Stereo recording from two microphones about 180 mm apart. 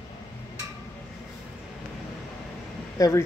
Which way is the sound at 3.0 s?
20° left (ahead or behind).